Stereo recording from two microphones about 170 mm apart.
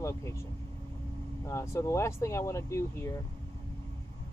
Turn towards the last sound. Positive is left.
turn(degrees=15)  # may be behind; listen again after turning